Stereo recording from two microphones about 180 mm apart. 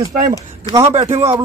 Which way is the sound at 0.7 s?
20° left (ahead or behind).